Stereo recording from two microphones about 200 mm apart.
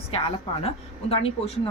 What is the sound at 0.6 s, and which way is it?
Speech, 30° left (ahead or behind).